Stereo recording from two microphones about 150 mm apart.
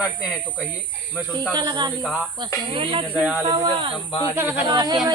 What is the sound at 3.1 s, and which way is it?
Speech, 5° right (ahead or behind).